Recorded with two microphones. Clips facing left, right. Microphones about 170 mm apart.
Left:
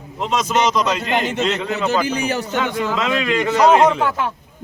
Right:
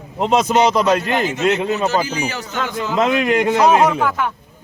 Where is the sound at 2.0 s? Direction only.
60° left (ahead or behind).